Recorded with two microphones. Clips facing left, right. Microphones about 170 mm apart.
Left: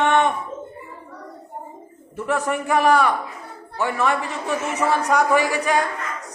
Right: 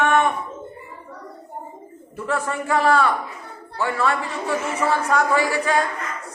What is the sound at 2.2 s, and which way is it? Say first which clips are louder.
A man's voice: left 2 dB; 15° left (ahead or behind).